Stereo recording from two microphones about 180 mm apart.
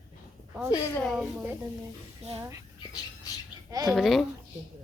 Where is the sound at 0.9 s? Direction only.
5° left (ahead or behind).